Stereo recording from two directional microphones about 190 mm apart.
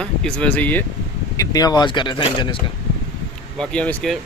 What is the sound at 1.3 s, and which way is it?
Speech, 20° left (ahead or behind).